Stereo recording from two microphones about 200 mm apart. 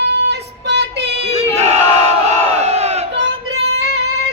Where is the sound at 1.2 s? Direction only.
30° right (ahead or behind).